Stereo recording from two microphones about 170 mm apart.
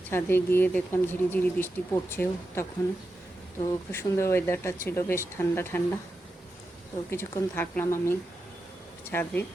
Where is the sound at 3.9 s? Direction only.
15° left (ahead or behind).